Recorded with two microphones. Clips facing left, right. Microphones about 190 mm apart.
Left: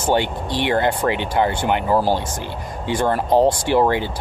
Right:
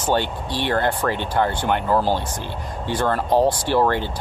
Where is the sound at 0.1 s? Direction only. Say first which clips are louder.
Left 2 dB; 15° left (ahead or behind).